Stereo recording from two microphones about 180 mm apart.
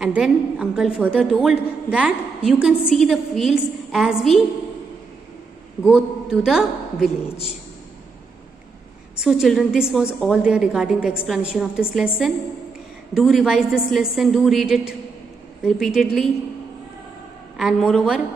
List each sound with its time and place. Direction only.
0.0 s a woman's voice: 5° right (ahead or behind)
5.9 s a woman's voice: centre (ahead or behind)
9.1 s a woman's voice: 5° right (ahead or behind)
13.1 s a woman's voice: centre (ahead or behind)
17.6 s a woman's voice: centre (ahead or behind)